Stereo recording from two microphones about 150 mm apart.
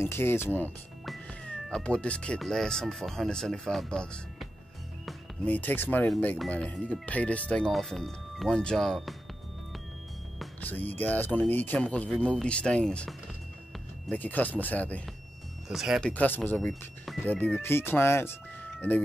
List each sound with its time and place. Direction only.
0.0 s speech: 15° left (ahead or behind)
1.0 s speech: centre (ahead or behind)
10.9 s speech: 10° left (ahead or behind)
15.7 s speech: centre (ahead or behind)
16.1 s speech: 10° left (ahead or behind)
17.3 s speech: 10° left (ahead or behind)